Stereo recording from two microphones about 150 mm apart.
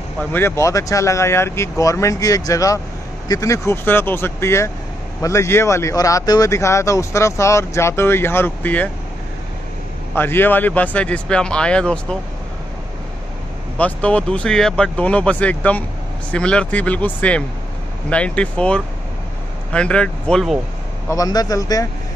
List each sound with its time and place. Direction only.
0.2 s speech: 15° left (ahead or behind)
10.1 s speech: 15° left (ahead or behind)
13.7 s speech: 10° left (ahead or behind)
21.1 s speech: 25° left (ahead or behind)